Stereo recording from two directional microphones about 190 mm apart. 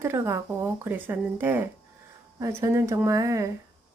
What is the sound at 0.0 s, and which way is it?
A woman's voice, 15° right (ahead or behind).